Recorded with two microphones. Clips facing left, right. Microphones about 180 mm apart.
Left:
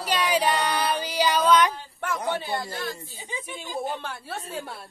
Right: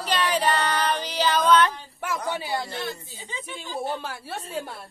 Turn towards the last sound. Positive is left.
turn(degrees=0)  # may be behind; listen again after turning